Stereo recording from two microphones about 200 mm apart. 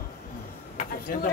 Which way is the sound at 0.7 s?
45° left (ahead or behind).